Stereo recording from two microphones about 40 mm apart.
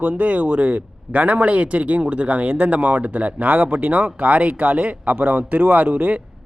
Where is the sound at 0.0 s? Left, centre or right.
Right.